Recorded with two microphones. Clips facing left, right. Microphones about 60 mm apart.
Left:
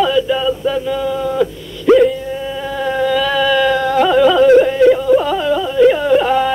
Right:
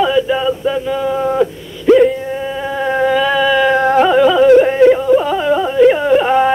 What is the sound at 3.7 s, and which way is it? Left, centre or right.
Music, right.